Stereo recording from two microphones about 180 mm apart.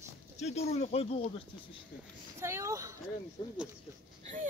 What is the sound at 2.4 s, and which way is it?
Speech, 15° right (ahead or behind).